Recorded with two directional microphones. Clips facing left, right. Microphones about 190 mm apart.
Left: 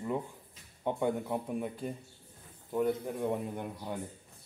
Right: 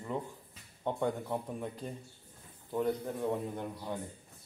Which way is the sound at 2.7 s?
10° left (ahead or behind).